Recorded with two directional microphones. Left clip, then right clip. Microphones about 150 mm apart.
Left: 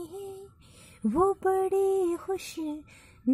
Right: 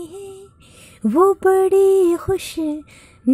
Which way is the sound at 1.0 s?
20° right (ahead or behind).